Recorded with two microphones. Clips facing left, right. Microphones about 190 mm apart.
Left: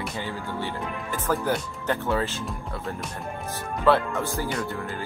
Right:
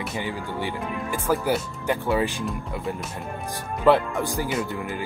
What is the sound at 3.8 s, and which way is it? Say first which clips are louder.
Speech: right 2 dB; 15° right (ahead or behind).